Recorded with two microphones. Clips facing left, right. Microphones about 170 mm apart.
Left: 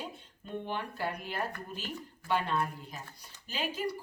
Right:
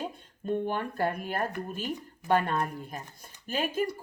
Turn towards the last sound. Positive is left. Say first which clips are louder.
# right 5 dB
turn(degrees=-50)  # may be behind; listen again after turning